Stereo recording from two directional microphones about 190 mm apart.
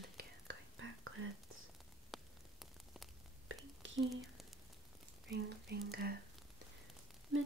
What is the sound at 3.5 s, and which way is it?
Whispering, 90° right.